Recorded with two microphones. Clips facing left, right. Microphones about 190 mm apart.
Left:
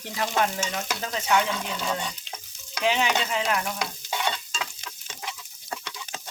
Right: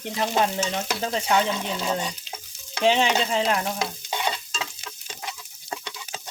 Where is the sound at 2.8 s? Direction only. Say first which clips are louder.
Right 4 dB; 30° right (ahead or behind).